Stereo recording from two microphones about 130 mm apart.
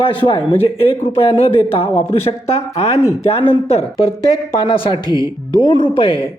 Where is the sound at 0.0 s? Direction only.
45° left (ahead or behind).